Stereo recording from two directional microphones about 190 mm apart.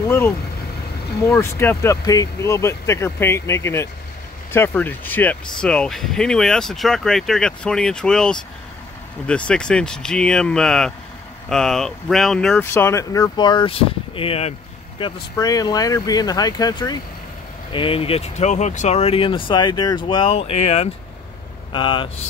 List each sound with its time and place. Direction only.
1.3 s speech: 10° left (ahead or behind)